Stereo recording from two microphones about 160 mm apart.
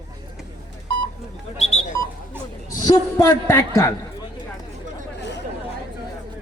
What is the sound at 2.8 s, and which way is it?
A man's voice, 20° left (ahead or behind).